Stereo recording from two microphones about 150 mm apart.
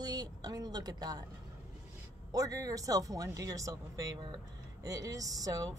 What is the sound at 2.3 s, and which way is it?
Speech, 25° right (ahead or behind).